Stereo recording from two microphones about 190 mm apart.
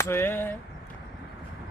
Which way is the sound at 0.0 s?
15° left (ahead or behind).